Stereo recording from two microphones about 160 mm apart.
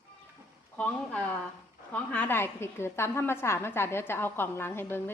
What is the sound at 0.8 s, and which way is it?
A woman's voice, 10° left (ahead or behind).